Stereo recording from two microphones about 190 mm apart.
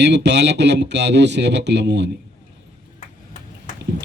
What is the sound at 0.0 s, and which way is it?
Speech, 65° right (ahead or behind).